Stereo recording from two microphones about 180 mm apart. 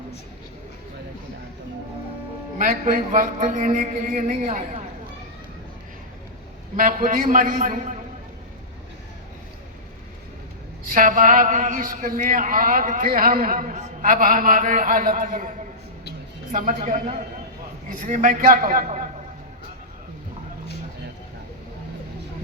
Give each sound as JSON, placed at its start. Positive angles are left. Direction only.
{"t": 2.6, "sound": "speech", "side_deg": -50}
{"t": 6.7, "sound": "speech", "side_deg": -50}
{"t": 10.9, "sound": "speech", "side_deg": -50}